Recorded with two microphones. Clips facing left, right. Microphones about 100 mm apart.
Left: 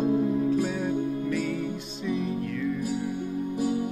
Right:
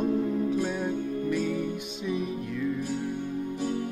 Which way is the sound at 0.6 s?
15° right (ahead or behind).